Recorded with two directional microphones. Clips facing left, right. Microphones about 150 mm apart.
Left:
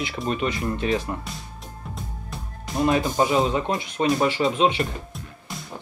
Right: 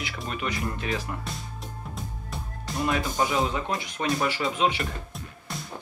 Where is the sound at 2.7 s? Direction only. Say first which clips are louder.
Left 6 dB; 25° left (ahead or behind).